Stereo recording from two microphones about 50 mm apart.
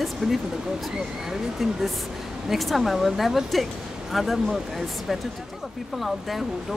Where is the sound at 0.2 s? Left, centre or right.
Centre.